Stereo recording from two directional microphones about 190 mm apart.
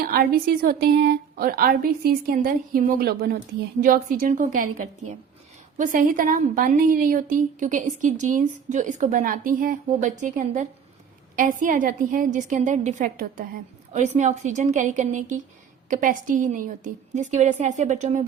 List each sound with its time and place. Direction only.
0.0 s a woman's voice: 50° right (ahead or behind)